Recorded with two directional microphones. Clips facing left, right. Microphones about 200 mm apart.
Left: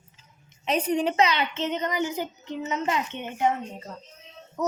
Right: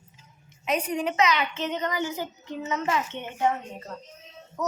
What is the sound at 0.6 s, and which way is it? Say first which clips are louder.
A woman's voice: left 3 dB; 30° left (ahead or behind).